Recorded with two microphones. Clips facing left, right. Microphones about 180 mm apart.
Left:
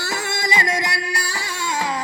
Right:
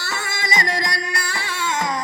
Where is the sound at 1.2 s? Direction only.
40° left (ahead or behind).